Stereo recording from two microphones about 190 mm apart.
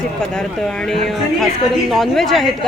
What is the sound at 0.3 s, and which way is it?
Speech, centre (ahead or behind).